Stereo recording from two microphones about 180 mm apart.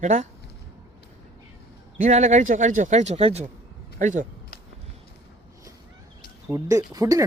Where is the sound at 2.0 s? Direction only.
40° right (ahead or behind).